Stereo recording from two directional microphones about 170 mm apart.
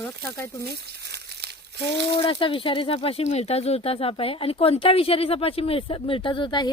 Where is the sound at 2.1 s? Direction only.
30° left (ahead or behind).